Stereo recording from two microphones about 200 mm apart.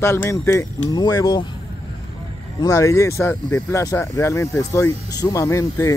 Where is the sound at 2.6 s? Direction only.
15° left (ahead or behind).